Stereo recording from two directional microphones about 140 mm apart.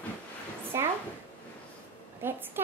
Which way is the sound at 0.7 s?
20° right (ahead or behind).